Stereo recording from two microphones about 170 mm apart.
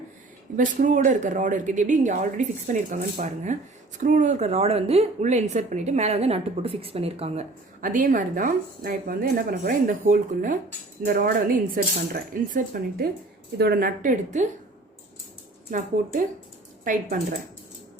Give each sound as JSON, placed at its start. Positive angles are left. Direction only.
{"t": 0.5, "sound": "speech", "side_deg": -50}
{"t": 7.8, "sound": "speech", "side_deg": -50}
{"t": 16.8, "sound": "speech", "side_deg": -50}